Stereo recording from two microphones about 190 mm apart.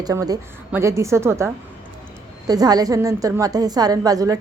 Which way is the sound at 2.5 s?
20° right (ahead or behind).